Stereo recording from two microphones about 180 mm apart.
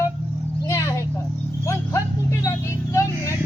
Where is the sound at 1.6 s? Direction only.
15° left (ahead or behind).